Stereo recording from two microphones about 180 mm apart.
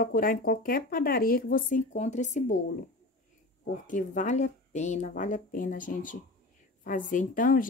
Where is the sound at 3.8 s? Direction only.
45° left (ahead or behind).